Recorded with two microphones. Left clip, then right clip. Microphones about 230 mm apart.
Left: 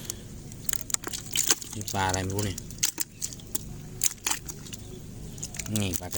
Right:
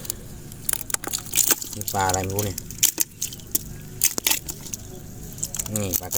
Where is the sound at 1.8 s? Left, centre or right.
Left.